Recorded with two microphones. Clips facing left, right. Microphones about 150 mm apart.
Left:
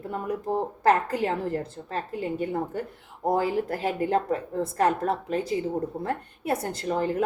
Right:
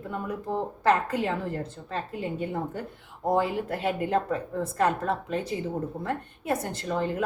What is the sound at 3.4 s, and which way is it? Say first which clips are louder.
A woman's voice: left 1 dB; 35° left (ahead or behind).